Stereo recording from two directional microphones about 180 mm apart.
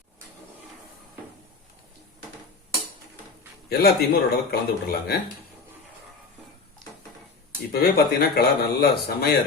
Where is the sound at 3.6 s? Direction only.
60° left (ahead or behind).